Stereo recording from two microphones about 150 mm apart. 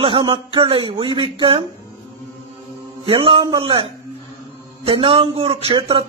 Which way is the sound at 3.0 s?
35° right (ahead or behind).